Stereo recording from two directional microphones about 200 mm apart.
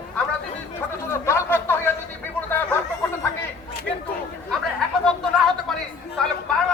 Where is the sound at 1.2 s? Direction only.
10° left (ahead or behind).